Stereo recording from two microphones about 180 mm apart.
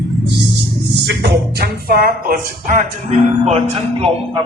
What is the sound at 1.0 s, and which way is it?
Speech, 65° right (ahead or behind).